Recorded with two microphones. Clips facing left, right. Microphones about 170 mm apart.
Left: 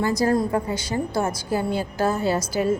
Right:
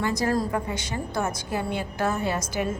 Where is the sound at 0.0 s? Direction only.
35° left (ahead or behind).